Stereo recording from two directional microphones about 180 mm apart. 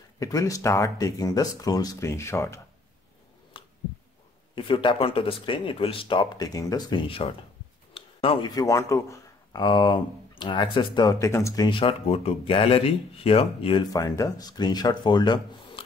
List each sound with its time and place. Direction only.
0.2 s speech: 20° left (ahead or behind)
4.6 s speech: 25° left (ahead or behind)